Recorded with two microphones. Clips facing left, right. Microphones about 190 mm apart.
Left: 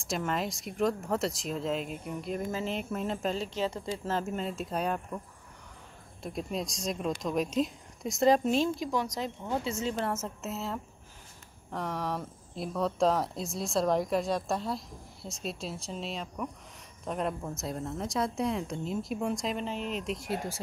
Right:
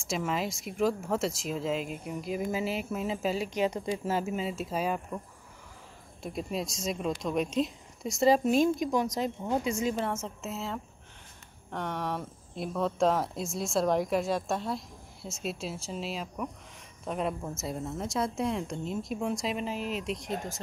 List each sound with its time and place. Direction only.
0.0 s speech: centre (ahead or behind)
6.2 s speech: centre (ahead or behind)
8.7 s speech: 20° right (ahead or behind)
10.0 s speech: 5° left (ahead or behind)